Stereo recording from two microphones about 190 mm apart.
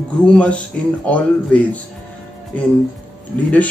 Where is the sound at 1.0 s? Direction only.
5° left (ahead or behind).